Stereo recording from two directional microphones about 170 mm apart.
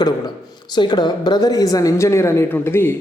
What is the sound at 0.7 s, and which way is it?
A woman's voice, 25° left (ahead or behind).